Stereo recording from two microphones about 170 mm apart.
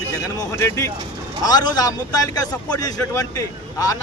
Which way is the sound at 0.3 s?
15° left (ahead or behind).